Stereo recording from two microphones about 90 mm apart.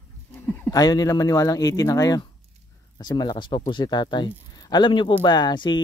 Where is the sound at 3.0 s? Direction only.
50° left (ahead or behind).